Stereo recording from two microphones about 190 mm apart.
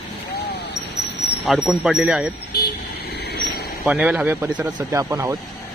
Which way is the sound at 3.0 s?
60° left (ahead or behind).